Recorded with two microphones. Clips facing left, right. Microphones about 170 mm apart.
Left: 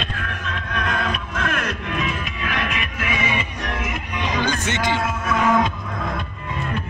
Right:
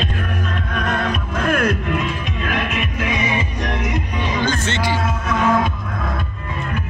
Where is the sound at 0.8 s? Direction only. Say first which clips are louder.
Right 3 dB; 45° right (ahead or behind).